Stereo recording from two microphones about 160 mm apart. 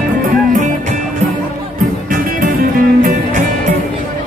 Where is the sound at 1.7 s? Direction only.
60° right (ahead or behind).